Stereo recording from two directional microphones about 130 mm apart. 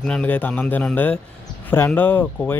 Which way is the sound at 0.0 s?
10° left (ahead or behind).